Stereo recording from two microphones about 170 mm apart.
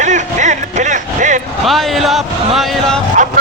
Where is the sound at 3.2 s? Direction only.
45° right (ahead or behind).